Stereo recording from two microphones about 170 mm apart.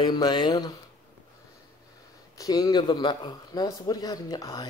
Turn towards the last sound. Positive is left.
turn(degrees=20)  # may be behind; listen again after turning